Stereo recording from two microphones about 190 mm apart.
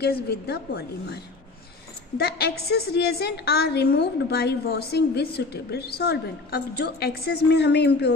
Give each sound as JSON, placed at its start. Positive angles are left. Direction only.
{"t": 0.0, "sound": "a woman's voice", "side_deg": 60}